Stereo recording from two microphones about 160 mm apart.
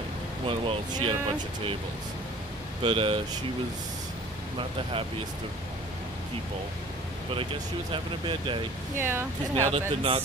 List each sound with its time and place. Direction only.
0.5 s speech: 35° right (ahead or behind)
2.8 s speech: 35° right (ahead or behind)
7.9 s speech: 30° right (ahead or behind)
8.9 s speech: 15° right (ahead or behind)
9.7 s speech: 35° right (ahead or behind)